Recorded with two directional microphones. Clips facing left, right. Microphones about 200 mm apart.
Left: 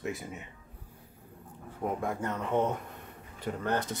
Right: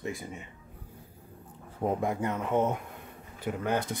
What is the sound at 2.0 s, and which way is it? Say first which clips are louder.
Speech: right 3 dB; 15° right (ahead or behind).